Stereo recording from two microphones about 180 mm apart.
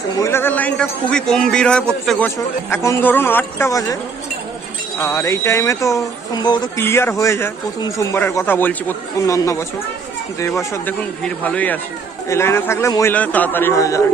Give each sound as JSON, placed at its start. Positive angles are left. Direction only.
{"t": 0.2, "sound": "a man's voice", "side_deg": 15}
{"t": 4.9, "sound": "speech", "side_deg": 15}